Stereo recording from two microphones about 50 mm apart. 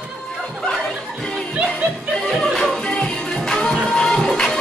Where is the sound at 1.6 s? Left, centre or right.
Centre.